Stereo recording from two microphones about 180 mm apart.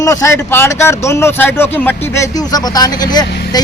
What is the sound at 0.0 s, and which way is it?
Speech, 15° left (ahead or behind).